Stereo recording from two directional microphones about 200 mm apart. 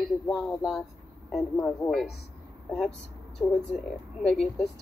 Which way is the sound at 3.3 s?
Centre (ahead or behind).